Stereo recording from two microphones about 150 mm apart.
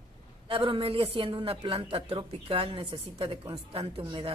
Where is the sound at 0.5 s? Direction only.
35° right (ahead or behind).